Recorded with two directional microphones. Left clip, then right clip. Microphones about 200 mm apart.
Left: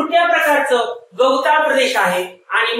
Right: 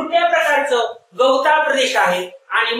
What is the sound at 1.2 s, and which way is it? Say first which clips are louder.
Speech: even; 15° right (ahead or behind).